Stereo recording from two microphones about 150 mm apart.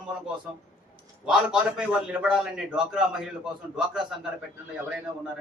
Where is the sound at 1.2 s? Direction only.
5° right (ahead or behind).